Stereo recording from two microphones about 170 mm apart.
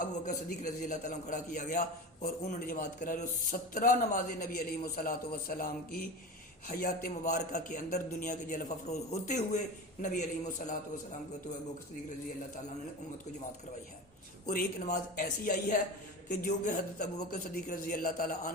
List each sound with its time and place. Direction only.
0.0 s a man's voice: 50° left (ahead or behind)
14.4 s a man's voice: 55° left (ahead or behind)